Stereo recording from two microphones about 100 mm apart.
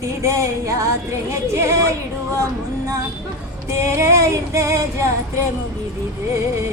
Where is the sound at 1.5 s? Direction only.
30° right (ahead or behind).